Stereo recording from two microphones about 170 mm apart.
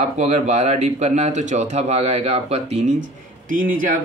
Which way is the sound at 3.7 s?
55° right (ahead or behind).